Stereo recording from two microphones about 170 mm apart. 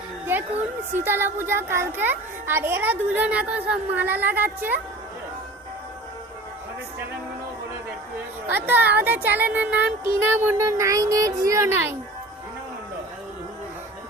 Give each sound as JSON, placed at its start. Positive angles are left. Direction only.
{"t": 0.9, "sound": "a child's voice", "side_deg": -15}
{"t": 8.5, "sound": "a child's voice", "side_deg": -10}